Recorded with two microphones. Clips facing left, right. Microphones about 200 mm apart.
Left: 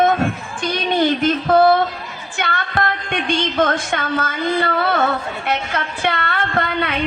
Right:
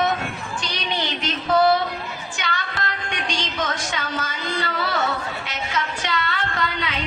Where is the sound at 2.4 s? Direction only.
55° left (ahead or behind).